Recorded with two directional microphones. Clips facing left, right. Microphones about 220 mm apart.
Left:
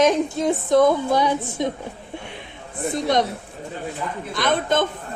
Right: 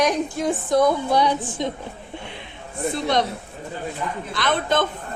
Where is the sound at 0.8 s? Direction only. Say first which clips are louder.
Even; 50° left (ahead or behind).